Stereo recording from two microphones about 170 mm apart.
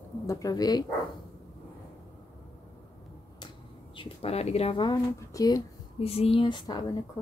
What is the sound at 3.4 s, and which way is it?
Speech, 30° left (ahead or behind).